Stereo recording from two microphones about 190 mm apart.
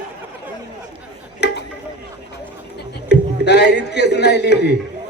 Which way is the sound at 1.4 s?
60° left (ahead or behind).